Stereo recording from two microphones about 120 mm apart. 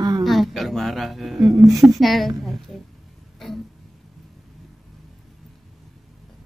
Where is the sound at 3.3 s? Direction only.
Centre (ahead or behind).